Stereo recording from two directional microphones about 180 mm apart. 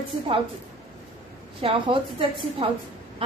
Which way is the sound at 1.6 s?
30° right (ahead or behind).